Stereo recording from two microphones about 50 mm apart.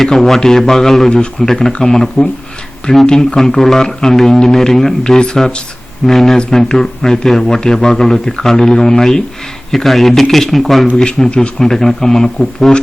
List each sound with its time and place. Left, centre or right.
0.0 s a man's voice: centre
10.9 s a man's voice: centre